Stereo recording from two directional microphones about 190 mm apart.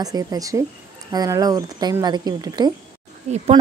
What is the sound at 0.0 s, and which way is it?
A woman's voice, 20° right (ahead or behind).